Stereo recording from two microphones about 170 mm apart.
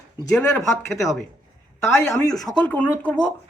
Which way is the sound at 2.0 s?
15° left (ahead or behind).